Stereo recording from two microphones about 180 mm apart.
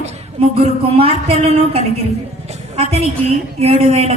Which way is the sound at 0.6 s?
35° right (ahead or behind).